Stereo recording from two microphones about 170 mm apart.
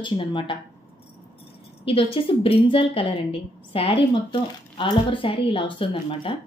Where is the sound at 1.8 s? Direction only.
35° left (ahead or behind).